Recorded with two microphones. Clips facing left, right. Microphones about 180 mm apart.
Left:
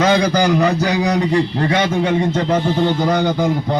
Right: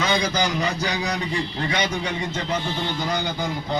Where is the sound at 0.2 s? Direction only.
60° left (ahead or behind).